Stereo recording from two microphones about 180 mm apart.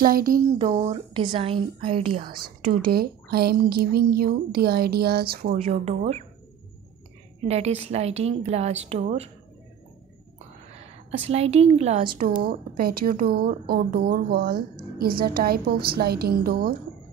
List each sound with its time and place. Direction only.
0.0 s a sound: 55° right (ahead or behind)
0.6 s a woman's voice: 30° right (ahead or behind)
2.4 s a woman's voice: 55° right (ahead or behind)
5.7 s a woman's voice: 35° right (ahead or behind)
7.4 s a woman's voice: 35° right (ahead or behind)
11.1 s a woman's voice: 35° right (ahead or behind)
12.4 s a woman's voice: 55° right (ahead or behind)